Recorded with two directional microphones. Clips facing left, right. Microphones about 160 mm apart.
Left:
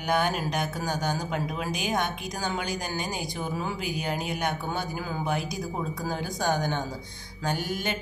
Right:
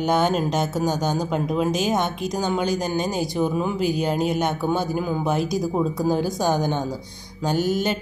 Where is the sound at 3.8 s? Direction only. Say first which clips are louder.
Right 9 dB; 15° left (ahead or behind).